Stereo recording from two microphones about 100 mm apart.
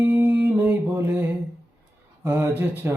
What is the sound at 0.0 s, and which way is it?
Mantra, 25° right (ahead or behind).